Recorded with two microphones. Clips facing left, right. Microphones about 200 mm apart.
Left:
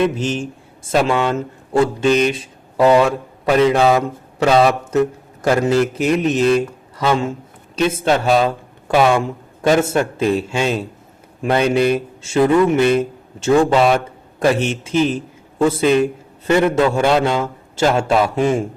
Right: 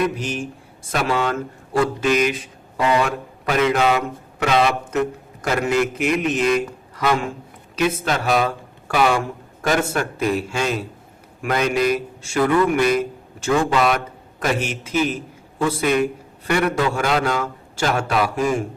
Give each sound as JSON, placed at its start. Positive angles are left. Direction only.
{"t": 0.0, "sound": "a man's voice", "side_deg": 25}